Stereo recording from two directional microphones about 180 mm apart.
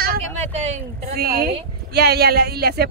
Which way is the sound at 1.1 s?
60° right (ahead or behind).